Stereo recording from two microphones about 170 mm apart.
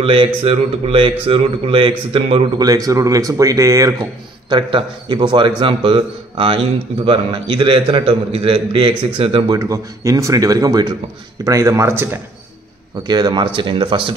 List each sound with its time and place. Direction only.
0.0 s a man's voice: 30° right (ahead or behind)
9.6 s speech: 20° right (ahead or behind)
13.0 s speech: 25° right (ahead or behind)